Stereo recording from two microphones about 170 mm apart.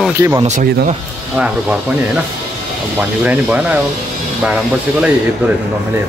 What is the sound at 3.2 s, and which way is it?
Speech, 10° right (ahead or behind).